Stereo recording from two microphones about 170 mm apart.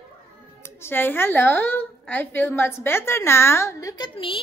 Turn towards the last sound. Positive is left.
turn(degrees=25)  # may be behind; listen again after turning